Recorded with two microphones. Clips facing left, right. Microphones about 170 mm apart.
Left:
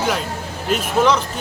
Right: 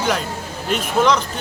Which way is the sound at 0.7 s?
5° left (ahead or behind).